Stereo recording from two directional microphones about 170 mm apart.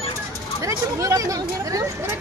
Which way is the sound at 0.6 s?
20° right (ahead or behind).